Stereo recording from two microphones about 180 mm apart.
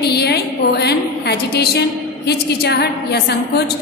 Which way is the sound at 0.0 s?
65° left (ahead or behind).